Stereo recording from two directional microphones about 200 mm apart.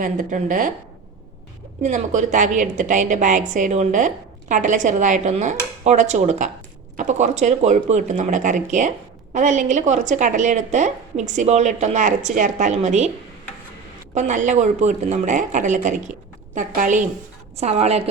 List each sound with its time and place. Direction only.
0.0 s a woman's voice: 40° right (ahead or behind)
1.8 s a woman's voice: 40° right (ahead or behind)
14.1 s a woman's voice: 35° right (ahead or behind)